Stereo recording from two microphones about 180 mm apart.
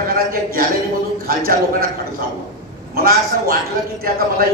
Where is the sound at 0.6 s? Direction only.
55° right (ahead or behind).